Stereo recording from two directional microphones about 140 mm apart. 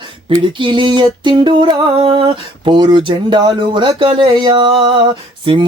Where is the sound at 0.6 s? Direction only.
35° right (ahead or behind).